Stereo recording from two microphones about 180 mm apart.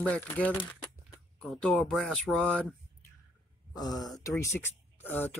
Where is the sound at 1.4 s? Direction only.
5° left (ahead or behind).